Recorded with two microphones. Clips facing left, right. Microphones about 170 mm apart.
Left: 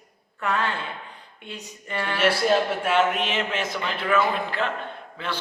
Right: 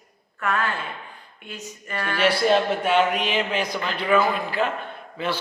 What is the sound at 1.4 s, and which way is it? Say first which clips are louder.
Speech: right 1 dB; 25° left (ahead or behind).